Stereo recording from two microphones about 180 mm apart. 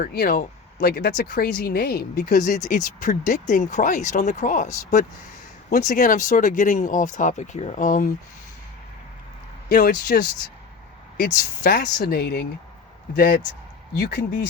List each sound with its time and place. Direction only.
0.0 s speech: 55° left (ahead or behind)
2.4 s speech: 45° left (ahead or behind)
9.6 s speech: 60° left (ahead or behind)
11.6 s speech: 55° left (ahead or behind)
13.9 s speech: 65° left (ahead or behind)